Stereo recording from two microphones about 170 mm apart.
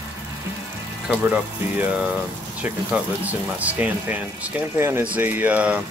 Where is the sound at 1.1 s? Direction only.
10° right (ahead or behind).